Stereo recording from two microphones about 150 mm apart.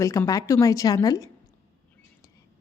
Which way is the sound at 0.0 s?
20° left (ahead or behind).